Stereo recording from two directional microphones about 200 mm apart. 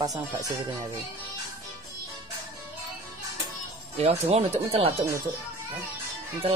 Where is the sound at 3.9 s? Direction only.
30° right (ahead or behind).